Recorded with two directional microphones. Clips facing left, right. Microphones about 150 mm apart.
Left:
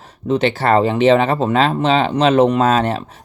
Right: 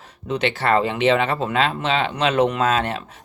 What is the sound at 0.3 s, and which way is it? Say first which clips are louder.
Speech: left 5 dB; 35° left (ahead or behind).